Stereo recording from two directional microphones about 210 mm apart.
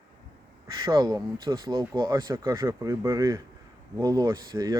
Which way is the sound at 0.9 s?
20° right (ahead or behind).